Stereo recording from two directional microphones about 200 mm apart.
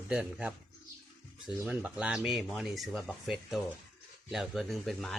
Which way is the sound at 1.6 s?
5° right (ahead or behind).